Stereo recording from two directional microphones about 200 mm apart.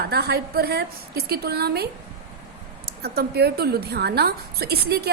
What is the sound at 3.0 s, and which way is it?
A woman's voice, 50° right (ahead or behind).